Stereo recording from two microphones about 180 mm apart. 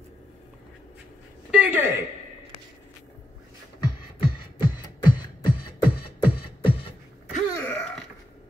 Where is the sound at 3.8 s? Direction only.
25° left (ahead or behind).